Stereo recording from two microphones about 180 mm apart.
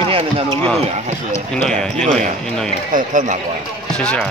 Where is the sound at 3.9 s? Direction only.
5° left (ahead or behind).